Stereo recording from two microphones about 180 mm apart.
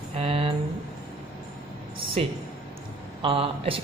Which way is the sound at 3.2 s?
30° right (ahead or behind).